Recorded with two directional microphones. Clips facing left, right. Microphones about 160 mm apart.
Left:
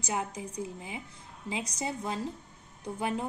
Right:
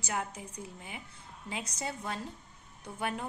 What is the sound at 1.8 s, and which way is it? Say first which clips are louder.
A woman's voice: left 4 dB; 20° left (ahead or behind).